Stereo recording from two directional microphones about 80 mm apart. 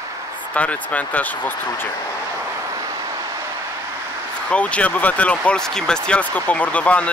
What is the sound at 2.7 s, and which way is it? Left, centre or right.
Vehicle, right.